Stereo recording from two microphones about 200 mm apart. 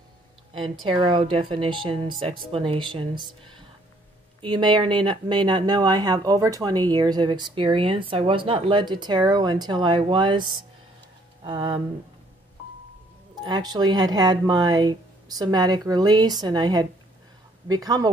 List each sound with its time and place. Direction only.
0.6 s speech: 25° right (ahead or behind)
4.4 s speech: 25° right (ahead or behind)
11.4 s speech: 25° right (ahead or behind)
13.4 s speech: 20° right (ahead or behind)